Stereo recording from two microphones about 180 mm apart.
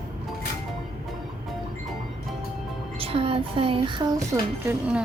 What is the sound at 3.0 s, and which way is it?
Child singing, 30° right (ahead or behind).